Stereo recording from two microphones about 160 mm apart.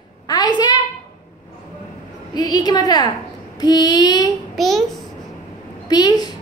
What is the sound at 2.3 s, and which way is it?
A woman's voice, 25° left (ahead or behind).